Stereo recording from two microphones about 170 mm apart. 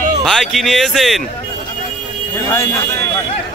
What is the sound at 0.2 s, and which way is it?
Speech, centre (ahead or behind).